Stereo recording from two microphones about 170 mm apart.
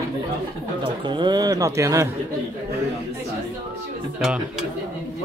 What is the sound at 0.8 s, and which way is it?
Speech, 25° right (ahead or behind).